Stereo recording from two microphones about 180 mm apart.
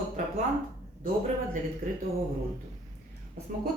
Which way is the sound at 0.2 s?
40° right (ahead or behind).